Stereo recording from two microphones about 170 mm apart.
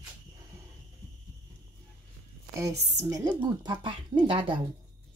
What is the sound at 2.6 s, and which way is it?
Speech, 15° right (ahead or behind).